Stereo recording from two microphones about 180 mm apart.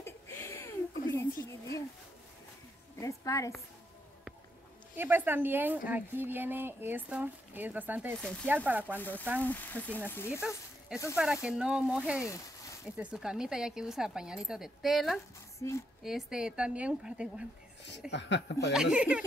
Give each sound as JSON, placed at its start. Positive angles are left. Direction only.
{"t": 0.0, "sound": "a sound", "side_deg": 15}
{"t": 3.0, "sound": "a sound", "side_deg": 15}
{"t": 4.9, "sound": "a woman's voice", "side_deg": -10}
{"t": 8.2, "sound": "speech", "side_deg": 5}
{"t": 8.6, "sound": "a woman's voice", "side_deg": -10}
{"t": 8.9, "sound": "speech", "side_deg": 10}
{"t": 10.9, "sound": "speech", "side_deg": -5}
{"t": 12.3, "sound": "a sound", "side_deg": 20}
{"t": 12.9, "sound": "speech", "side_deg": -5}
{"t": 18.1, "sound": "speech", "side_deg": 75}
{"t": 18.7, "sound": "speech", "side_deg": -5}